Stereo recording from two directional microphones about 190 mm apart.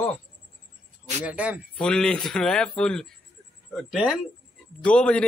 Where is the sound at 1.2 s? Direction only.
5° right (ahead or behind).